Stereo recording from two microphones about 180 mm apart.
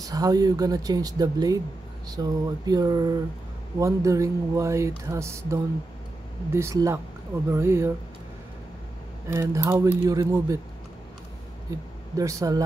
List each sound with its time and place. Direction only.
0.0 s speech: 20° right (ahead or behind)
9.3 s speech: 15° right (ahead or behind)
12.2 s speech: 20° right (ahead or behind)